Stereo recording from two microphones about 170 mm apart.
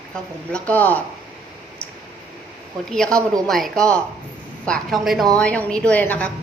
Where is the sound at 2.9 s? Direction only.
5° left (ahead or behind).